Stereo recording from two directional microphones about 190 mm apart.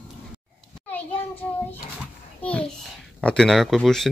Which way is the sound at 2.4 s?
5° left (ahead or behind).